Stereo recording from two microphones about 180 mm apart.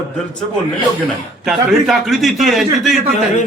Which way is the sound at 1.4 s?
Centre (ahead or behind).